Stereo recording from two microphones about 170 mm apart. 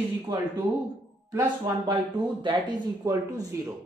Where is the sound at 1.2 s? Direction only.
10° right (ahead or behind).